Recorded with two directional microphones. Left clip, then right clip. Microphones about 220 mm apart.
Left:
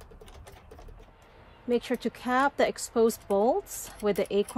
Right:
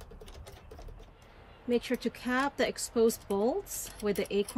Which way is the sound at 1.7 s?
20° left (ahead or behind).